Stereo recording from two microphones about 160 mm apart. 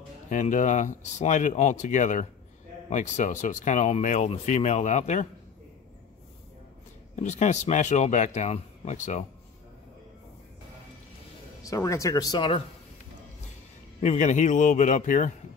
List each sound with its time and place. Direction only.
0.3 s speech: 50° left (ahead or behind)
7.2 s speech: 45° left (ahead or behind)
11.6 s speech: 20° left (ahead or behind)
14.0 s speech: 45° left (ahead or behind)